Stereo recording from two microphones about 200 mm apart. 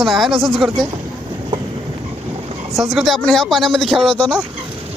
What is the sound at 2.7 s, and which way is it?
Speech, centre (ahead or behind).